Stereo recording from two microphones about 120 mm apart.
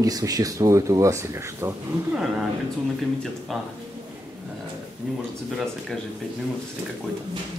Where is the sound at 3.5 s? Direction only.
Centre (ahead or behind).